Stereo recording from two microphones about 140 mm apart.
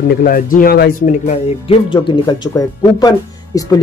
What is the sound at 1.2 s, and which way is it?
Speech, 35° left (ahead or behind).